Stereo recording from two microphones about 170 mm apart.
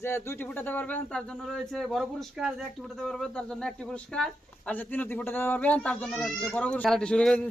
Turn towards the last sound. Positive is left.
turn(degrees=5)  # may be behind; listen again after turning